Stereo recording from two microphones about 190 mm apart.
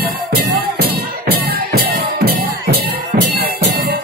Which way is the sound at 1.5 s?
55° right (ahead or behind).